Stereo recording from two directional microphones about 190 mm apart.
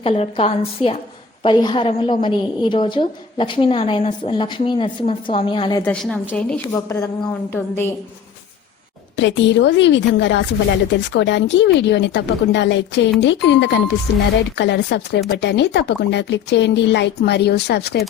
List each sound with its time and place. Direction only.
0.0 s a woman's voice: 30° left (ahead or behind)
5.8 s a woman's voice: 5° left (ahead or behind)
9.1 s a woman's voice: 70° left (ahead or behind)